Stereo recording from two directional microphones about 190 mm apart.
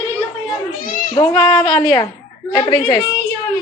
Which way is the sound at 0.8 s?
45° left (ahead or behind).